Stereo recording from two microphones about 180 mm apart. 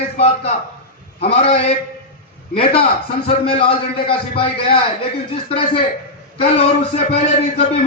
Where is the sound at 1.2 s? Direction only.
35° left (ahead or behind).